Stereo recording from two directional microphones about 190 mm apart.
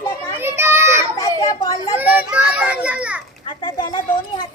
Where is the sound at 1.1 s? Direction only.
15° left (ahead or behind).